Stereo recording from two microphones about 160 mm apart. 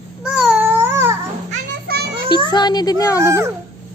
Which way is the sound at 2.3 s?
25° left (ahead or behind).